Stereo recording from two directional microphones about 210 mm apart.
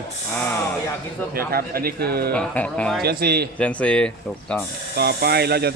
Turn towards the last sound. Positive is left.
turn(degrees=-50)  # may be behind; listen again after turning